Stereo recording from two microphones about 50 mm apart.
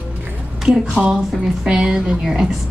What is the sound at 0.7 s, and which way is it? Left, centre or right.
A woman's voice, centre.